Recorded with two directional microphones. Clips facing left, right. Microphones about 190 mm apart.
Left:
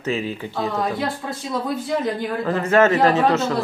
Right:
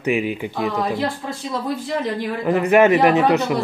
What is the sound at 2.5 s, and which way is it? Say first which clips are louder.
Speech: right 3 dB; 15° right (ahead or behind).